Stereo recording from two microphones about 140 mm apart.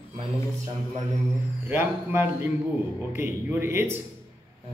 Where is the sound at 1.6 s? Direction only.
15° right (ahead or behind).